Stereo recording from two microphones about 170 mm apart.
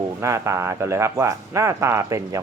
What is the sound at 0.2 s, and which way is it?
Speech, 15° right (ahead or behind).